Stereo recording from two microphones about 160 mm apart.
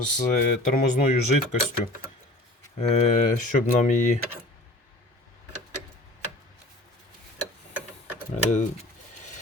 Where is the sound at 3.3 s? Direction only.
50° left (ahead or behind).